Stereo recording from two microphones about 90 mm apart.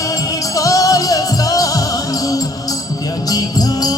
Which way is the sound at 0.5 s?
40° left (ahead or behind).